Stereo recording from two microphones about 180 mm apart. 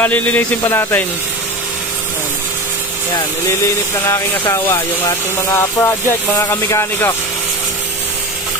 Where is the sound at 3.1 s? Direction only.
15° left (ahead or behind).